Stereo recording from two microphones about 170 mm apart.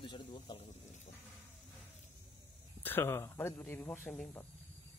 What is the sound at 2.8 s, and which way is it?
Speech, 10° left (ahead or behind).